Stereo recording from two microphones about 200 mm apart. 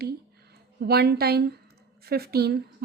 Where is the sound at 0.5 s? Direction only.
50° right (ahead or behind).